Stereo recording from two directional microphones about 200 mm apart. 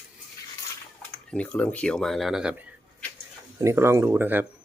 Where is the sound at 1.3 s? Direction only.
5° left (ahead or behind).